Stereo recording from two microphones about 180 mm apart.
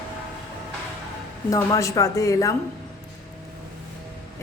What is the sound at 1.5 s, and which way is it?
Speech, 20° left (ahead or behind).